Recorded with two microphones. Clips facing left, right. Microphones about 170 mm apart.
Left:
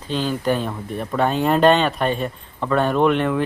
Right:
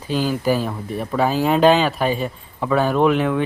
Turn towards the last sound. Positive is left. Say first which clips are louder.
# right 1 dB
turn(degrees=0)  # may be behind; listen again after turning